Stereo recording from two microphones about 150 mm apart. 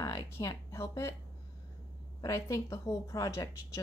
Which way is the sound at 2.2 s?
20° left (ahead or behind).